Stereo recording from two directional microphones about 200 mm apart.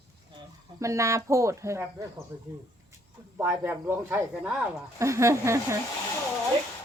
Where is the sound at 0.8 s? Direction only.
15° right (ahead or behind).